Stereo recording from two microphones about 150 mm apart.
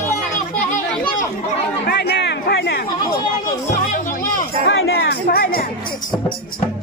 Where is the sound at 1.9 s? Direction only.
90° left.